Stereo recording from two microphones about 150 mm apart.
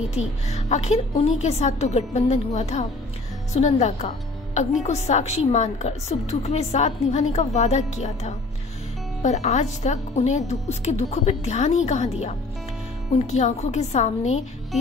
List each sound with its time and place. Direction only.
0.0 s a woman's voice: 50° left (ahead or behind)